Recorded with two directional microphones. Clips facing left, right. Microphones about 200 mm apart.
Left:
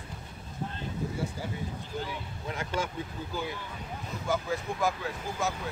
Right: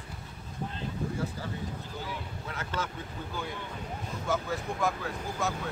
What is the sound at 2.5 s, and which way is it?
Speech, 15° left (ahead or behind).